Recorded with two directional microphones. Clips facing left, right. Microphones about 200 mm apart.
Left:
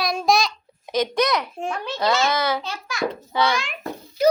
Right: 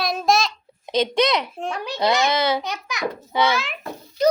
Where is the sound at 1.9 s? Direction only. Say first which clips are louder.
Right 1 dB; 15° right (ahead or behind).